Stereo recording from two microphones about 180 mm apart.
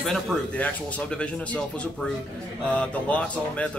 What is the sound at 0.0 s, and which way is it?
Speech, centre (ahead or behind).